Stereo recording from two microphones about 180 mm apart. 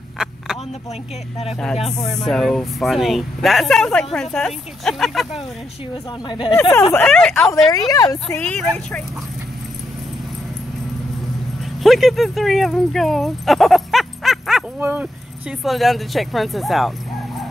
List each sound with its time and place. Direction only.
1.5 s speech: centre (ahead or behind)
6.2 s a woman's voice: 25° left (ahead or behind)
6.7 s speech: 15° left (ahead or behind)
7.5 s a woman's voice: 20° left (ahead or behind)
8.4 s speech: 5° left (ahead or behind)
11.8 s speech: centre (ahead or behind)